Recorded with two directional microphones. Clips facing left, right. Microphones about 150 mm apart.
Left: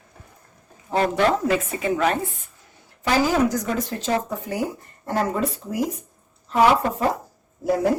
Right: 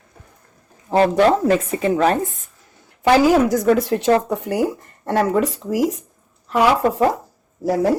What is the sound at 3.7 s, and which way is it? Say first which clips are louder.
Speech: right 9 dB; 65° right (ahead or behind).